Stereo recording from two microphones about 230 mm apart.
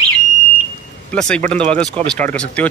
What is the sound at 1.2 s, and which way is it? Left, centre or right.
Speech, centre.